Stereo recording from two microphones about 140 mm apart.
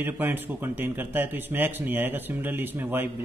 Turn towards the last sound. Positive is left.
turn(degrees=-15)  # may be behind; listen again after turning